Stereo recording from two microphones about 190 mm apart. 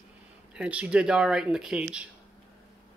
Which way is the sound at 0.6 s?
5° right (ahead or behind).